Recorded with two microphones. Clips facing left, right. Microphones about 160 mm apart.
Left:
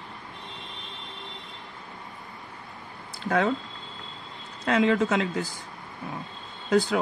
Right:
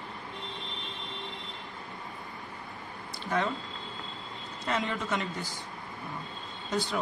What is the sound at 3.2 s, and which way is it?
Speech, 75° left (ahead or behind).